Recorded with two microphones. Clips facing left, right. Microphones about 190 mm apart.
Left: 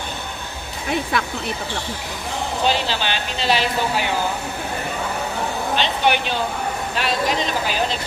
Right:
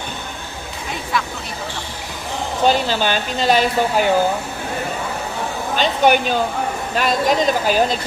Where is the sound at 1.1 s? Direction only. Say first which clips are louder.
Right 5 dB; 60° left (ahead or behind).